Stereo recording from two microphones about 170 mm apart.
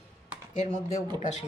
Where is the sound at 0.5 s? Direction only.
45° left (ahead or behind).